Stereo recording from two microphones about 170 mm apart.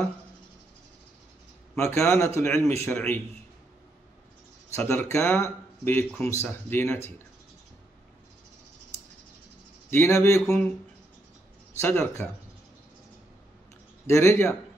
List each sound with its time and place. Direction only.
1.8 s speech: 15° left (ahead or behind)
4.7 s speech: 15° left (ahead or behind)
9.8 s speech: 15° left (ahead or behind)
11.8 s speech: 15° left (ahead or behind)
14.0 s speech: 15° left (ahead or behind)